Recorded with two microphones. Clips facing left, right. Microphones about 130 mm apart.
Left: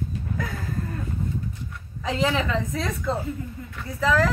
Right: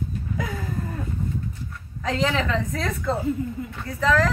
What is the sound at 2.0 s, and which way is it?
A woman's voice, 10° left (ahead or behind).